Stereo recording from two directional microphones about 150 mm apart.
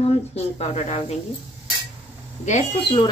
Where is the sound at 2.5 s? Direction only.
45° left (ahead or behind).